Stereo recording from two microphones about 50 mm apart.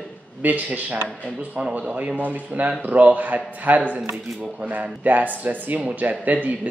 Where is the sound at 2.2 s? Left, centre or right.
Right.